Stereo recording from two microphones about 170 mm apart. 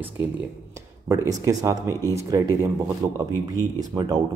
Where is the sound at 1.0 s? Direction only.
15° right (ahead or behind).